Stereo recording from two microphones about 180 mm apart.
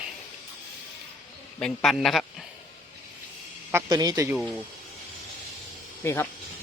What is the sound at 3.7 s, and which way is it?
Speech, 20° right (ahead or behind).